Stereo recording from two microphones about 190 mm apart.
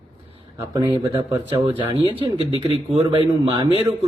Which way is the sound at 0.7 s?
25° right (ahead or behind).